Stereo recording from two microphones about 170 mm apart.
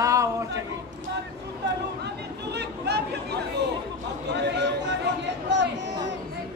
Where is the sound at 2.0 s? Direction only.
80° right.